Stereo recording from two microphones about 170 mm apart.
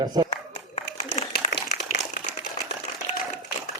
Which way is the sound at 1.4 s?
35° left (ahead or behind).